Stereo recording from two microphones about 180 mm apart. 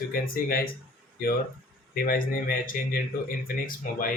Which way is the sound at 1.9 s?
55° left (ahead or behind).